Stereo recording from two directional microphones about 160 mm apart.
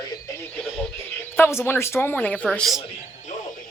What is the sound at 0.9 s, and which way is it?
Speech, 15° left (ahead or behind).